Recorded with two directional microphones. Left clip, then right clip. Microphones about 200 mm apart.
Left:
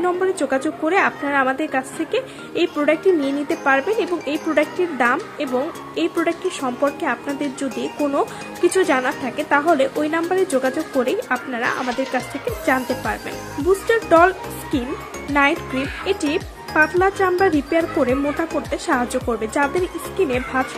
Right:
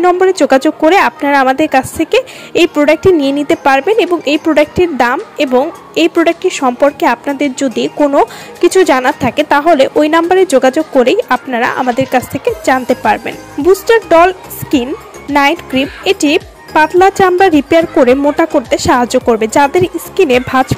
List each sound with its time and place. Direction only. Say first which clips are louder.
0.0 s speech: right 11 dB; 40° right (ahead or behind)
8.9 s speech: right 10 dB; 50° right (ahead or behind)